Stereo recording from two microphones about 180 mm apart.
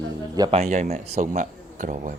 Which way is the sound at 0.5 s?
40° right (ahead or behind).